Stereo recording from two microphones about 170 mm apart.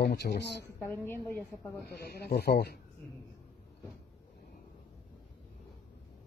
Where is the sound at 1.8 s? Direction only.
70° left (ahead or behind).